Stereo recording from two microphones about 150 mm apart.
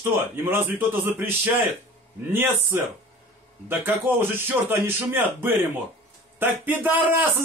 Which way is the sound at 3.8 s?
15° right (ahead or behind).